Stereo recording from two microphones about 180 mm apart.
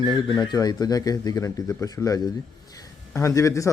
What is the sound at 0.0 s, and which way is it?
Speech, 25° left (ahead or behind).